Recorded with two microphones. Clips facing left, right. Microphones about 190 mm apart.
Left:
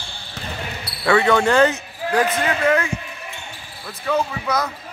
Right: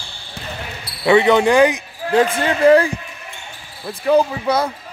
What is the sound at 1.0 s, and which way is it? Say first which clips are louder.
Speech: right 4 dB; 20° right (ahead or behind).